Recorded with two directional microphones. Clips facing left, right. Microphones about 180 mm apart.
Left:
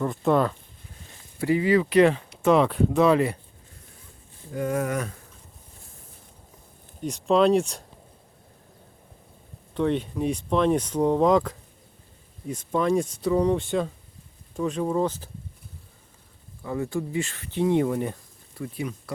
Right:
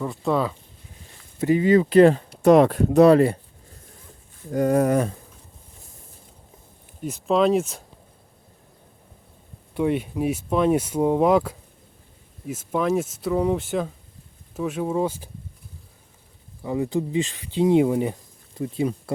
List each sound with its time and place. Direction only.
0.0 s speech: centre (ahead or behind)
1.4 s speech: 25° right (ahead or behind); by 3.3 s 40° right (ahead or behind)
4.5 s speech: 40° right (ahead or behind)
7.0 s speech: centre (ahead or behind)
9.7 s speech: 10° right (ahead or behind)
16.6 s speech: 15° right (ahead or behind)